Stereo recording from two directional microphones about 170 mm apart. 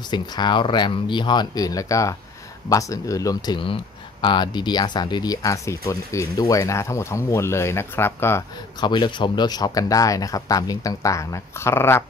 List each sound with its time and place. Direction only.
0.1 s speech: 25° left (ahead or behind)